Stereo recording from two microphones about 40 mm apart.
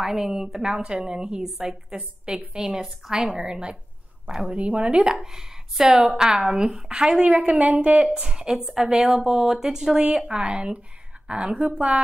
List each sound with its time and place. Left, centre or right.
0.0 s a woman's voice: centre
4.6 s a woman's voice: right
4.9 s a woman's voice: right
7.4 s a woman's voice: right
8.5 s a woman's voice: centre; by 12.0 s right